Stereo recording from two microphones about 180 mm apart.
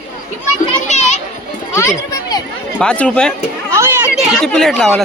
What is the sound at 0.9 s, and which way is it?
Children playing, 40° left (ahead or behind).